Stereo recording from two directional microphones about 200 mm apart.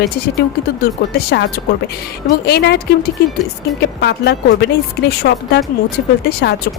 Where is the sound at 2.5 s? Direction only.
55° left (ahead or behind).